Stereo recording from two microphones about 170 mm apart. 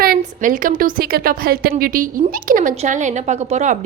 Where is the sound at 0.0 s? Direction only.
55° right (ahead or behind).